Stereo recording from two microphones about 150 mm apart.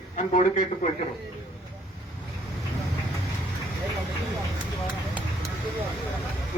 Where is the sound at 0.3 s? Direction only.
55° left (ahead or behind).